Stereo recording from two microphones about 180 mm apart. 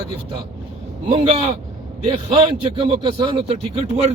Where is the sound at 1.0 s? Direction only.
40° right (ahead or behind).